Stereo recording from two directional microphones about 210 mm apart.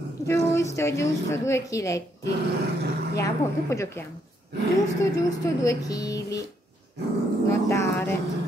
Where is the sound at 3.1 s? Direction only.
15° left (ahead or behind).